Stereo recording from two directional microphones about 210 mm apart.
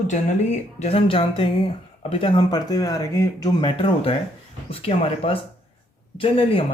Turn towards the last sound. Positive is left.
turn(degrees=25)  # may be behind; listen again after turning